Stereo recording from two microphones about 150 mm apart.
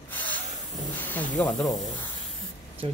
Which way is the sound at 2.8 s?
40° right (ahead or behind).